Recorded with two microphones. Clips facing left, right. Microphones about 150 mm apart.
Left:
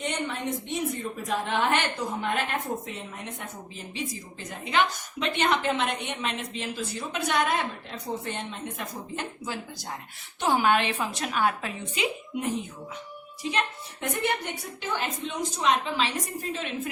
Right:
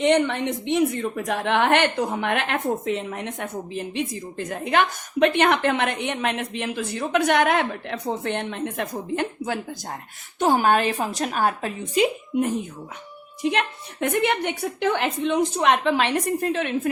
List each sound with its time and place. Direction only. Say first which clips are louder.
0.0 s a woman's voice: right 11 dB; 75° right (ahead or behind)
10.4 s a woman's voice: right 4 dB; 45° right (ahead or behind)
13.4 s a woman's voice: right 6 dB; 60° right (ahead or behind)